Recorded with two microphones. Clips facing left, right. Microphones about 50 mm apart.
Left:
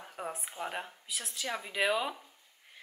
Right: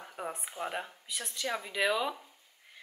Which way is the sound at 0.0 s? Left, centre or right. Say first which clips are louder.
Right 1 dB; centre.